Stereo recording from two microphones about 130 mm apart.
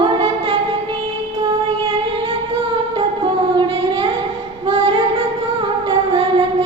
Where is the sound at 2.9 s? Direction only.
40° right (ahead or behind).